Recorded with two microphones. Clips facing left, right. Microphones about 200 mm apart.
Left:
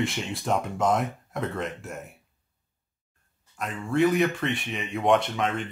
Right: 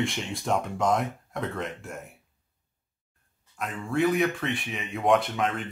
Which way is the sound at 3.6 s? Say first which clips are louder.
Left 2 dB; centre (ahead or behind).